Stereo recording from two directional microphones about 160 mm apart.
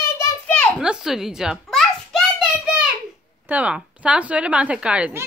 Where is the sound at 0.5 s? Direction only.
5° left (ahead or behind).